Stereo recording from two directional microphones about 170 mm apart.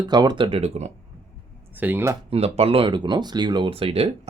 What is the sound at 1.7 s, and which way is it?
Speech, 10° right (ahead or behind).